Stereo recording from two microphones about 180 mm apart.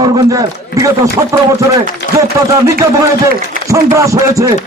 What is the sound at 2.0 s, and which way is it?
Chopping, 70° left (ahead or behind).